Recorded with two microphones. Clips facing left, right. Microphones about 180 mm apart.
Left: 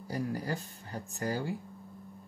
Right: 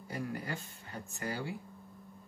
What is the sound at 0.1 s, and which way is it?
Speech, 35° left (ahead or behind).